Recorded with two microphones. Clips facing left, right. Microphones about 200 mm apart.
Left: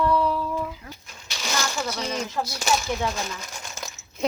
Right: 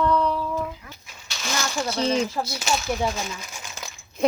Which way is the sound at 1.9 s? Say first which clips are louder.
Right 6 dB; 30° right (ahead or behind).